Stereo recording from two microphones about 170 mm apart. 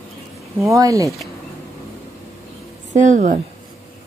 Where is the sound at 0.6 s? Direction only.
20° right (ahead or behind).